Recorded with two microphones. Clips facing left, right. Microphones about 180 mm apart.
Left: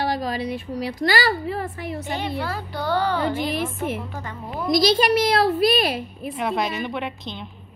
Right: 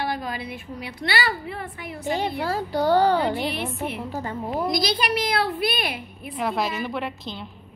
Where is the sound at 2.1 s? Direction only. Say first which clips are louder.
Right 4 dB; 35° right (ahead or behind).